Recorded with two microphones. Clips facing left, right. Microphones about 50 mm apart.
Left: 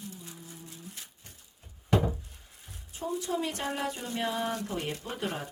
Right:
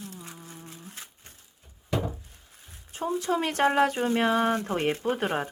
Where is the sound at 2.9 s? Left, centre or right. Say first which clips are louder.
Right 5 dB; right.